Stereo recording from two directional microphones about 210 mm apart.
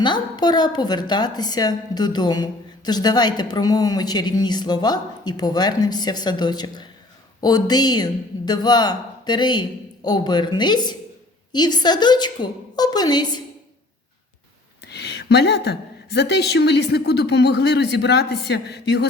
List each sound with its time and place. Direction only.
0.0 s a woman's voice: 20° left (ahead or behind)
14.8 s a woman's voice: 50° left (ahead or behind)